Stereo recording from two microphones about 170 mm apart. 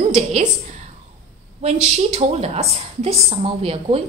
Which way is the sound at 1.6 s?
40° right (ahead or behind).